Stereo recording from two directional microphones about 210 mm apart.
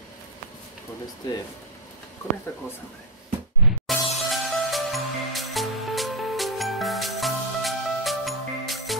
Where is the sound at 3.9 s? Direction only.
Centre (ahead or behind).